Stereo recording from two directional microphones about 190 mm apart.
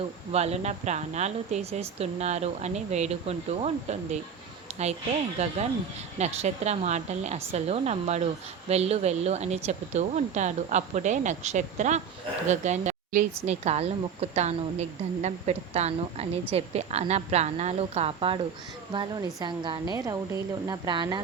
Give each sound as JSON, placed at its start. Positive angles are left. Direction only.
{"t": 0.3, "sound": "a woman's voice", "side_deg": -35}
{"t": 4.7, "sound": "a sound", "side_deg": -35}
{"t": 5.4, "sound": "a woman's voice", "side_deg": -35}